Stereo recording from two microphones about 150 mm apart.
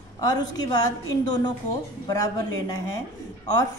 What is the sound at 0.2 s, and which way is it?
Speech, 25° left (ahead or behind).